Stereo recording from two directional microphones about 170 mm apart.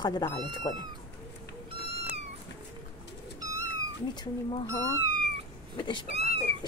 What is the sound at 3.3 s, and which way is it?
Cat, 20° right (ahead or behind).